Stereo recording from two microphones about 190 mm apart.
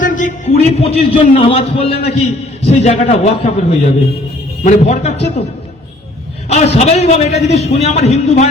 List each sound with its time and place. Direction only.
0.0 s a man's voice: 45° left (ahead or behind)
6.7 s a man's voice: 35° left (ahead or behind)